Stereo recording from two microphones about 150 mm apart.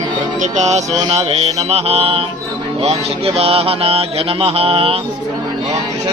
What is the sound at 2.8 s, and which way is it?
Mantra, 40° right (ahead or behind).